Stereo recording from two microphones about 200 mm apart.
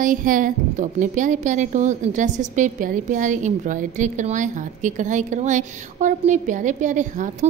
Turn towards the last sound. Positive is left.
turn(degrees=-40)  # may be behind; listen again after turning